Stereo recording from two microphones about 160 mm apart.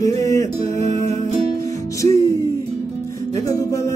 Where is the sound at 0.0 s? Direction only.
20° left (ahead or behind).